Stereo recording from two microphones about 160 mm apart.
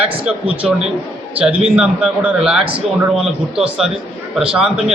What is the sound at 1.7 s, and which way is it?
A man's voice, 5° right (ahead or behind).